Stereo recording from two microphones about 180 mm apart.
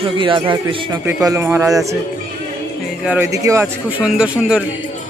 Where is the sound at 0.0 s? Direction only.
30° right (ahead or behind).